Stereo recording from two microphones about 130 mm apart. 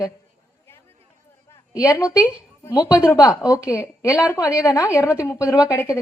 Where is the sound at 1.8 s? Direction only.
25° left (ahead or behind).